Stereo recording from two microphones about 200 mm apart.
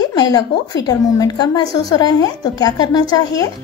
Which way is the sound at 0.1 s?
20° left (ahead or behind).